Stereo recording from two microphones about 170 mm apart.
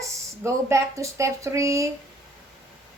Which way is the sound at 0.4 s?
15° right (ahead or behind).